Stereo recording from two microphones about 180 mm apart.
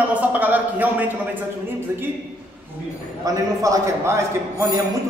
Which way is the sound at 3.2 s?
20° right (ahead or behind).